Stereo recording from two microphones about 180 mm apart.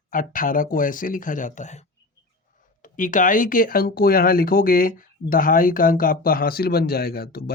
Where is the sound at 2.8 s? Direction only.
45° left (ahead or behind).